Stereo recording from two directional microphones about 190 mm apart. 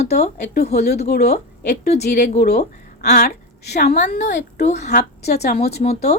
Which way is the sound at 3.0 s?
55° left (ahead or behind).